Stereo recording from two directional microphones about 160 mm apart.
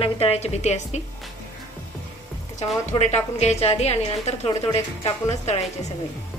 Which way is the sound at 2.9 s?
45° left (ahead or behind).